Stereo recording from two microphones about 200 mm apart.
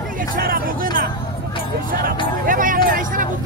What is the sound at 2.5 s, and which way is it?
Music, 40° right (ahead or behind).